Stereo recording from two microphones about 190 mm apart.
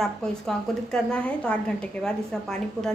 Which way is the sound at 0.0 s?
Centre (ahead or behind).